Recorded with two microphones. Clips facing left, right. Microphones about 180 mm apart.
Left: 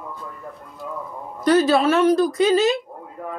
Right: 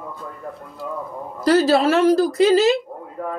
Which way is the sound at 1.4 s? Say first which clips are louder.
Right 1 dB; 30° right (ahead or behind).